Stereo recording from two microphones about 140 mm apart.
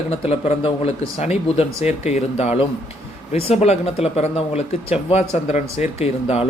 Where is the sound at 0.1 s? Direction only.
45° left (ahead or behind).